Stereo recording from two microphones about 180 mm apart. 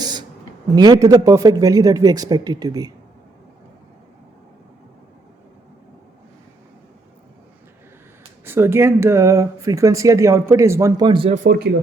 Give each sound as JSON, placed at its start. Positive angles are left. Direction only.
{"t": 0.0, "sound": "a sound", "side_deg": -25}
{"t": 0.8, "sound": "speech", "side_deg": -20}
{"t": 8.4, "sound": "speech", "side_deg": -15}